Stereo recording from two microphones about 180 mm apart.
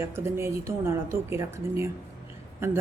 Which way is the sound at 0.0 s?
15° right (ahead or behind).